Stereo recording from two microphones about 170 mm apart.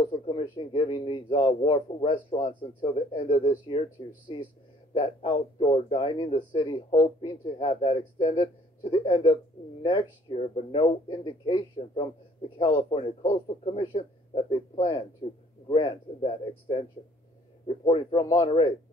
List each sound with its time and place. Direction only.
0.1 s a man's voice: 30° left (ahead or behind)